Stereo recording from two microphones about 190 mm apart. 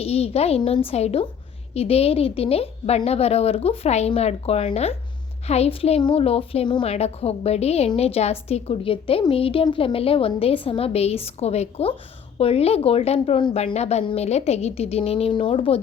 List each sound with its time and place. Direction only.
0.0 s a woman's voice: 30° left (ahead or behind)